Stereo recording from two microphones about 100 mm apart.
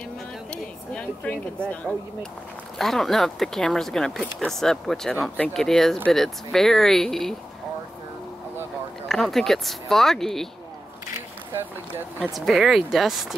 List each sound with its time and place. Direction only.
0.5 s a sound: 10° left (ahead or behind)
2.8 s speech: 5° left (ahead or behind)
9.1 s speech: 5° left (ahead or behind)
12.4 s speech: centre (ahead or behind)